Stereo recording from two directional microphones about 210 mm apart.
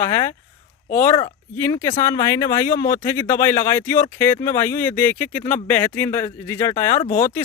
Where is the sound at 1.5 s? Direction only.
10° left (ahead or behind).